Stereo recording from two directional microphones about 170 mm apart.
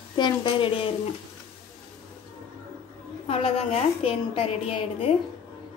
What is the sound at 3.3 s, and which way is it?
A woman's voice, 35° left (ahead or behind).